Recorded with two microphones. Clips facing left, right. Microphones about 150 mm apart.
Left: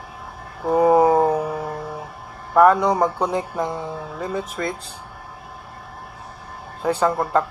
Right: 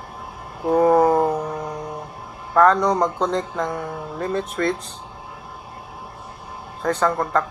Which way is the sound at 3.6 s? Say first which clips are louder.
Even; 20° left (ahead or behind).